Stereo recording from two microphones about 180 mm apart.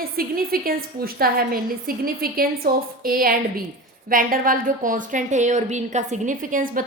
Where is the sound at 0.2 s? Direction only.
55° right (ahead or behind).